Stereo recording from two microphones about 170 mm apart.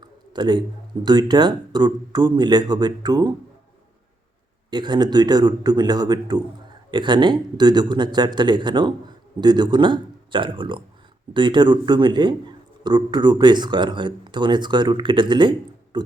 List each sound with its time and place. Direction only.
0.0 s a sound: 25° right (ahead or behind)
1.0 s speech: 25° right (ahead or behind)
4.7 s speech: 25° right (ahead or behind)